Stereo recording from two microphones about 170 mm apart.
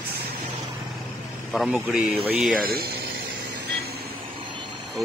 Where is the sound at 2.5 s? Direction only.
60° right (ahead or behind).